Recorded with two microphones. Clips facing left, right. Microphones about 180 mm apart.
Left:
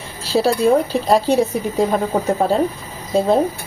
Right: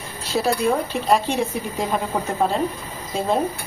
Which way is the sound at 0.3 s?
30° left (ahead or behind).